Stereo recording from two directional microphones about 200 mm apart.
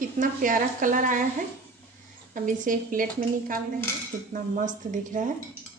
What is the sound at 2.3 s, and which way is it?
Speech, 40° right (ahead or behind).